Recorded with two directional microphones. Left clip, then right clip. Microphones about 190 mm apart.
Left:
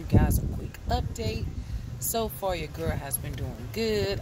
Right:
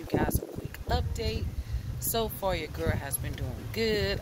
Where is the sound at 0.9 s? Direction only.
5° left (ahead or behind).